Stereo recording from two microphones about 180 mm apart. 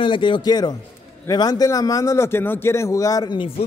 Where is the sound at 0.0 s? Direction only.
25° left (ahead or behind).